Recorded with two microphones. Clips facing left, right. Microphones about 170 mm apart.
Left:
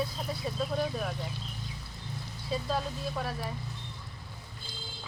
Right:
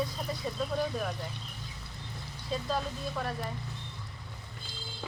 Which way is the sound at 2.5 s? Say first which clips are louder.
Left 1 dB; 5° left (ahead or behind).